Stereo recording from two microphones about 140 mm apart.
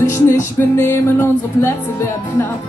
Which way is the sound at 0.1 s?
15° left (ahead or behind).